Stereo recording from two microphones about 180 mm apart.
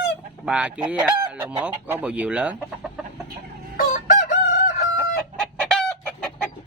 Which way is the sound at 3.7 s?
55° left (ahead or behind).